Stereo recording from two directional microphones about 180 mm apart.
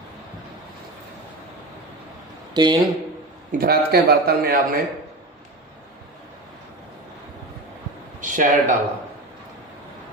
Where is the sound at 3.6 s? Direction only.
60° right (ahead or behind).